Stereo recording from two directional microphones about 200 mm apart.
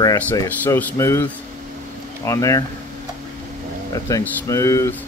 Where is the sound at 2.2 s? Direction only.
15° left (ahead or behind).